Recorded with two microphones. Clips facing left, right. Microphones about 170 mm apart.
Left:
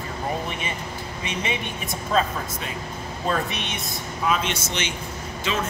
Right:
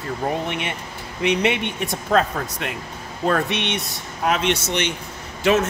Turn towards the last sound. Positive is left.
turn(degrees=-70)  # may be behind; listen again after turning